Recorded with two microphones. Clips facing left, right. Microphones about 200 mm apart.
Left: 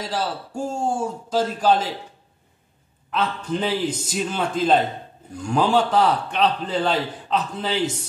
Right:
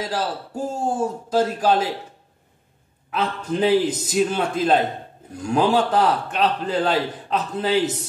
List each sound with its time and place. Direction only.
0.0 s a man's voice: 10° right (ahead or behind)
3.1 s a man's voice: 5° right (ahead or behind)